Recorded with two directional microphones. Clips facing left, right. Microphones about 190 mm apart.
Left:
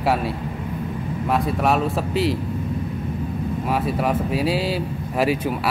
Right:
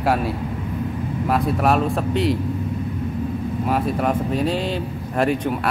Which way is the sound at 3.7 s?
Centre (ahead or behind).